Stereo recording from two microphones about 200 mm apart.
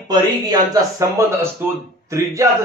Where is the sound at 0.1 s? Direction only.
20° right (ahead or behind).